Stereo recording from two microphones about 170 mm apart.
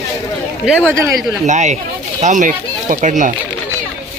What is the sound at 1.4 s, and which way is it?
Speech, 45° right (ahead or behind).